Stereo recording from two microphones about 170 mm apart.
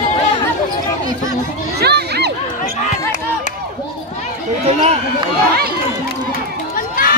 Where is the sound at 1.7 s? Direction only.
75° right (ahead or behind).